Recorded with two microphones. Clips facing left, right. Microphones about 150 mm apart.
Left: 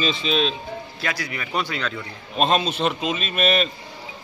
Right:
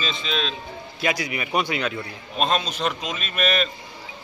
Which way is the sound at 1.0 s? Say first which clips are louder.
Right 6 dB; 15° right (ahead or behind).